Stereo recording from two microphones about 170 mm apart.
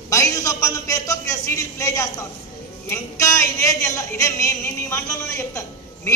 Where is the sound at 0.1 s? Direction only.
20° left (ahead or behind).